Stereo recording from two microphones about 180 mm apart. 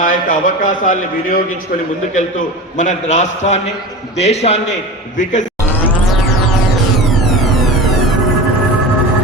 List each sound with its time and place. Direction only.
0.0 s a man's voice: 45° left (ahead or behind)
7.2 s music: centre (ahead or behind)